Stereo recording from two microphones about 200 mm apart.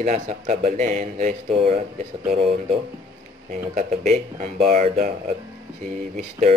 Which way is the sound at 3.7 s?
35° right (ahead or behind).